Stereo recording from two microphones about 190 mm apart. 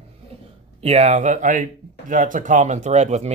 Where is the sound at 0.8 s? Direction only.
35° right (ahead or behind).